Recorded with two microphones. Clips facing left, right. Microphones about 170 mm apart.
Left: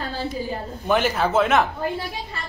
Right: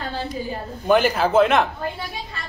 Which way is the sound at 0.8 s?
Centre (ahead or behind).